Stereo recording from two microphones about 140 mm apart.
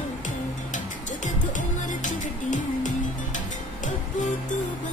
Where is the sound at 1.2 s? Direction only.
65° left (ahead or behind).